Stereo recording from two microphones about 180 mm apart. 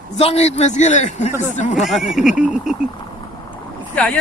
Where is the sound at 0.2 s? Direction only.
35° left (ahead or behind).